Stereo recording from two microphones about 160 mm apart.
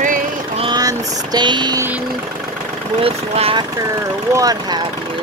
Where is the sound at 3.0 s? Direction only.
35° right (ahead or behind).